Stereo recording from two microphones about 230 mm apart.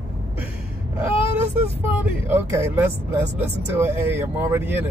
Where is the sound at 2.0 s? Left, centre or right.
Centre.